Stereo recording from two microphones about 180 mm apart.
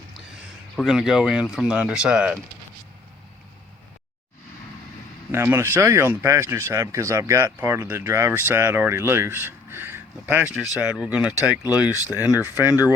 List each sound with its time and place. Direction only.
0.8 s speech: 5° right (ahead or behind)
5.3 s speech: 15° right (ahead or behind)
12.3 s speech: 20° left (ahead or behind)